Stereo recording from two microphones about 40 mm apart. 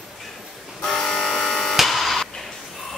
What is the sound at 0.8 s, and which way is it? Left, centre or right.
Electric shaver, centre.